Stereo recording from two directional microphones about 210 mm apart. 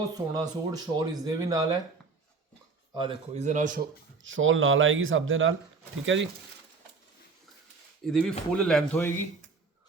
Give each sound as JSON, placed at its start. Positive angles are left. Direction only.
{"t": 0.1, "sound": "speech", "side_deg": -20}
{"t": 2.9, "sound": "speech", "side_deg": -25}
{"t": 4.2, "sound": "speech", "side_deg": -65}
{"t": 8.0, "sound": "speech", "side_deg": 5}